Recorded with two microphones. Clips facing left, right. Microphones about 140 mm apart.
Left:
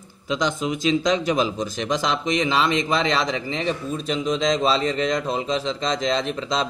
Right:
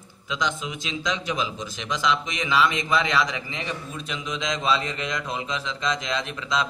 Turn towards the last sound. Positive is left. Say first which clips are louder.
# left 3 dB
turn(degrees=30)  # may be behind; listen again after turning